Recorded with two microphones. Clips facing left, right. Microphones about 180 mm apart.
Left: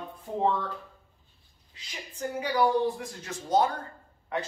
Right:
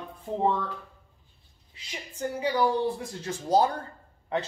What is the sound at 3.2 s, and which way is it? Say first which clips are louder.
Speech: right 2 dB; 30° right (ahead or behind).